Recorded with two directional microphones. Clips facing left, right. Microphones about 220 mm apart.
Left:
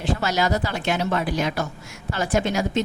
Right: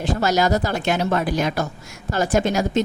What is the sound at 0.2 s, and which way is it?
A woman's voice, 45° right (ahead or behind).